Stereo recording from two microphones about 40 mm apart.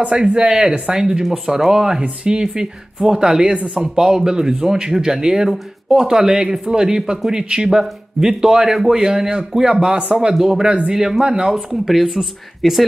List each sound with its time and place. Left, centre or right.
0.0 s speech: right
3.4 s speech: right
11.5 s speech: centre